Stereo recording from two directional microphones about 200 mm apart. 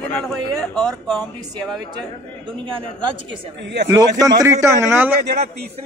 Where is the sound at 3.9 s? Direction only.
20° right (ahead or behind).